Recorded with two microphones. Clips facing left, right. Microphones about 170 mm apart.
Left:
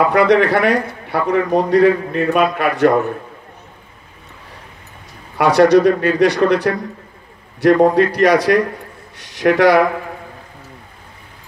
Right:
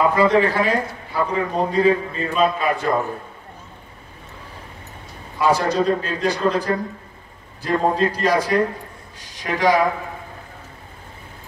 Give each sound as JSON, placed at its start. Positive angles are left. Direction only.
{"t": 0.1, "sound": "a man's voice", "side_deg": 70}
{"t": 5.4, "sound": "a man's voice", "side_deg": 70}